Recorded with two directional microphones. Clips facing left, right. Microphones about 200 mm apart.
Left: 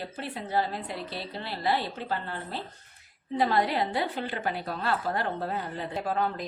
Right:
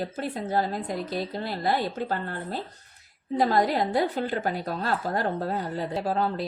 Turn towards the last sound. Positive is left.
turn(degrees=-35)  # may be behind; listen again after turning